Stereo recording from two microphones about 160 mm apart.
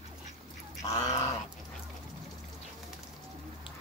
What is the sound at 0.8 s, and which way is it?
Goose, 20° left (ahead or behind).